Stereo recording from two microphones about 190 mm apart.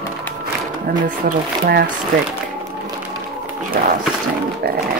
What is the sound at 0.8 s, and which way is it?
Speech, 45° right (ahead or behind).